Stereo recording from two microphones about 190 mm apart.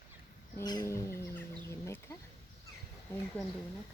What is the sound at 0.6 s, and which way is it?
Fowl, 20° left (ahead or behind).